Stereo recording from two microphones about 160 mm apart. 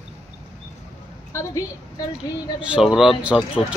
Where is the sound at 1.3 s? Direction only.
15° left (ahead or behind).